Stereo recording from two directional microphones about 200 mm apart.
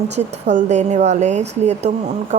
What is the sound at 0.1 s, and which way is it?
A woman's voice, 35° right (ahead or behind).